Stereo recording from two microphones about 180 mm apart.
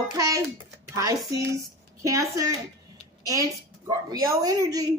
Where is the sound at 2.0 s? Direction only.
20° right (ahead or behind).